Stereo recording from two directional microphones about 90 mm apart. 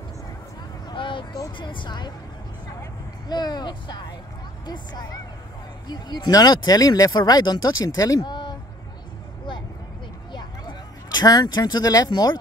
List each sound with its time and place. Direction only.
0.8 s a sound: 65° left (ahead or behind)
1.6 s a woman's voice: 65° left (ahead or behind)
3.3 s speech: 50° left (ahead or behind)
8.3 s a sound: 55° left (ahead or behind)
11.1 s speech: 50° left (ahead or behind)
12.1 s a woman's voice: 55° left (ahead or behind)